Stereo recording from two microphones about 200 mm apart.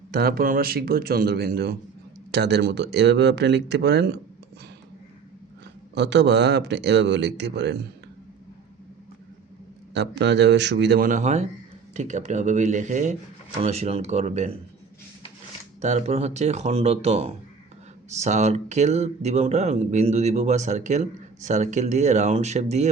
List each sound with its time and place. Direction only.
0.1 s a man's voice: 50° right (ahead or behind)
5.9 s a man's voice: 60° right (ahead or behind)
9.9 s a man's voice: 60° right (ahead or behind); by 14.5 s 35° right (ahead or behind)
15.8 s speech: 35° right (ahead or behind)